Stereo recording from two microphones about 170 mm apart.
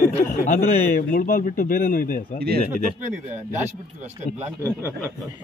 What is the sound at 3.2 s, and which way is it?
Speech, 15° right (ahead or behind).